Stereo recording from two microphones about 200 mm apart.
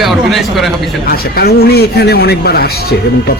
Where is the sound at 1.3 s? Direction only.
50° left (ahead or behind).